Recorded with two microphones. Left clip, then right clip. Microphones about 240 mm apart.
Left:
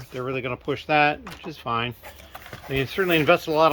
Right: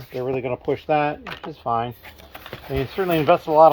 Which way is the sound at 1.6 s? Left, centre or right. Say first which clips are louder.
Right 3 dB; left.